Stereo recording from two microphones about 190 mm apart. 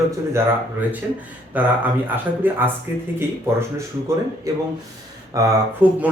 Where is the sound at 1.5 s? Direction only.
10° right (ahead or behind).